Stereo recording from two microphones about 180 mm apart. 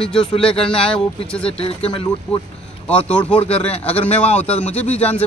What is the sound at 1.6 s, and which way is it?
Speech, 30° left (ahead or behind).